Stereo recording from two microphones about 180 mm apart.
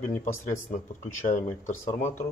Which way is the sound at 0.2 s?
45° left (ahead or behind).